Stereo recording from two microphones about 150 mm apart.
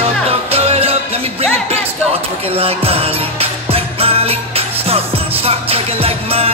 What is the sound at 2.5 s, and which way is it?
Music, 40° right (ahead or behind).